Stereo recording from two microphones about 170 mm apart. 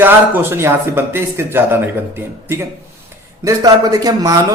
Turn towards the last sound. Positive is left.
turn(degrees=-20)  # may be behind; listen again after turning